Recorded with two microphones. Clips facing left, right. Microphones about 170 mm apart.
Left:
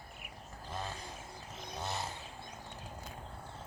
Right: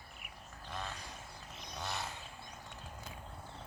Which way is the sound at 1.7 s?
20° left (ahead or behind).